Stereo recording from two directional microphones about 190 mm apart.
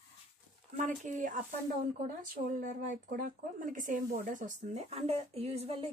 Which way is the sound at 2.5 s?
45° right (ahead or behind).